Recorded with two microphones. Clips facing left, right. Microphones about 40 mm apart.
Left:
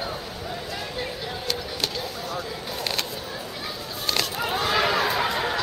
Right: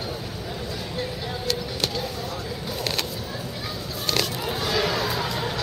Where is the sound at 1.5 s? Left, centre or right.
Centre.